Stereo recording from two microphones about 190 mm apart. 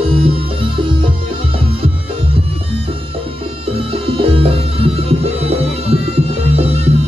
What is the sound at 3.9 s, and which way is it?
Music, 30° right (ahead or behind).